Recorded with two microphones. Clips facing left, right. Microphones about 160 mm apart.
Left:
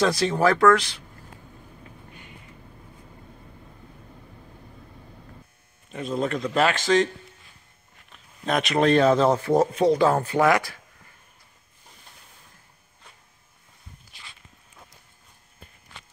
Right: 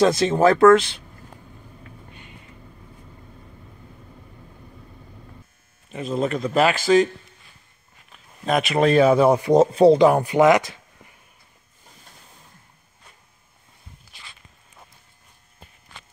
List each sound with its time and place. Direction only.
0.0 s speech: 25° right (ahead or behind)
5.9 s a man's voice: centre (ahead or behind)
8.1 s speech: 5° right (ahead or behind); by 11.1 s 20° right (ahead or behind)